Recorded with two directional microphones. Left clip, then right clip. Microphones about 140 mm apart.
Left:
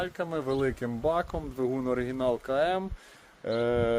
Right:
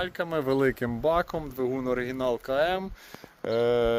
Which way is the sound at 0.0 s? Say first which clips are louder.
Right 3 dB; 75° right (ahead or behind).